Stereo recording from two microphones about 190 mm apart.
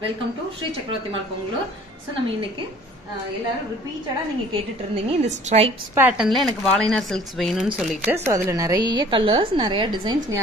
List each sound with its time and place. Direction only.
4.9 s a woman's voice: 35° right (ahead or behind)
5.9 s speech: 5° right (ahead or behind); by 10.4 s 25° right (ahead or behind)